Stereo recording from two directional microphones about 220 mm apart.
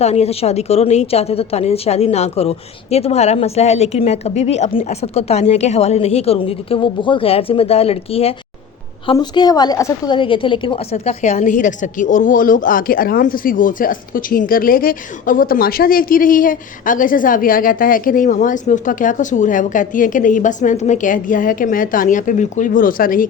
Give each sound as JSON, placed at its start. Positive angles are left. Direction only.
{"t": 0.0, "sound": "a woman's voice", "side_deg": 30}